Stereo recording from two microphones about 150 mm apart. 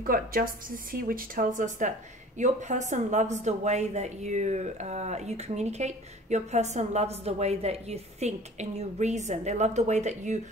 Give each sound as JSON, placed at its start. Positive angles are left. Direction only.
{"t": 0.0, "sound": "a woman's voice", "side_deg": -70}